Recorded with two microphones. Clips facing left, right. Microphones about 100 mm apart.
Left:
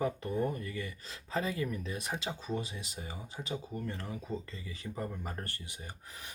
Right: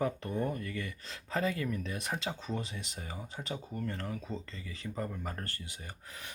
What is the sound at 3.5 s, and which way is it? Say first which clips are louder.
Speech: even; 15° left (ahead or behind).